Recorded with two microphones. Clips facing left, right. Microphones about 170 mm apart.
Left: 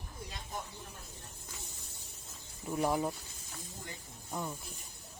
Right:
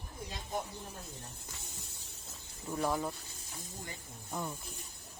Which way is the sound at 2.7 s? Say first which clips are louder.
Left 2 dB; 15° left (ahead or behind).